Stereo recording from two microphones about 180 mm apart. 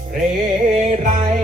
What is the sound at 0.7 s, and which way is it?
Music, 40° right (ahead or behind).